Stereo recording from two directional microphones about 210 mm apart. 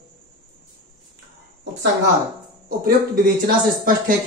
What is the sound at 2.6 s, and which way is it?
Speech, 45° right (ahead or behind).